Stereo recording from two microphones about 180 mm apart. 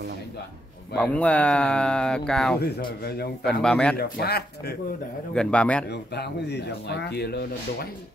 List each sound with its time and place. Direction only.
0.9 s speech: 10° left (ahead or behind)
3.0 s speech: 60° left (ahead or behind)
3.4 s speech: 5° left (ahead or behind)
3.9 s speech: 60° left (ahead or behind)
5.3 s speech: 5° left (ahead or behind)
5.9 s speech: 70° left (ahead or behind)